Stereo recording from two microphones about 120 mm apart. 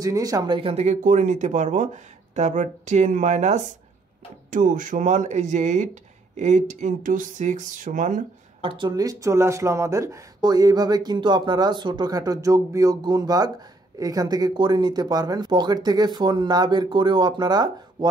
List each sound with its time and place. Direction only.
0.0 s speech: 30° right (ahead or behind); by 3.6 s 75° right (ahead or behind)
4.5 s speech: 90° right
8.6 s speech: 40° right (ahead or behind)